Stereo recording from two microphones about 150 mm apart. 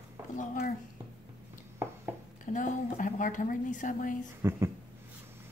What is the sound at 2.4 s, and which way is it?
A woman's voice, 60° left (ahead or behind).